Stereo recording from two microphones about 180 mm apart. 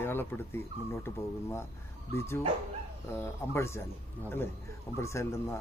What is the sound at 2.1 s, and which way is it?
Speech, 15° left (ahead or behind).